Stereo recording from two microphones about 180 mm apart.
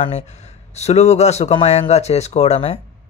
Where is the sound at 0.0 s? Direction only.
35° left (ahead or behind).